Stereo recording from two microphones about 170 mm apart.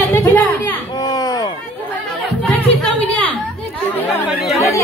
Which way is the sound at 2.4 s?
5° left (ahead or behind).